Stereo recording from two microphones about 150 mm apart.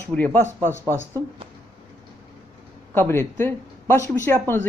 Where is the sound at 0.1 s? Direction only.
10° left (ahead or behind).